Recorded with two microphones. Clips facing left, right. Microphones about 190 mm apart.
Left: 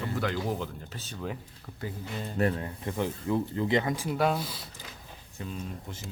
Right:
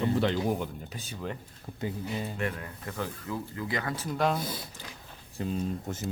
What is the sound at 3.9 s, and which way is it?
Speech, 10° left (ahead or behind).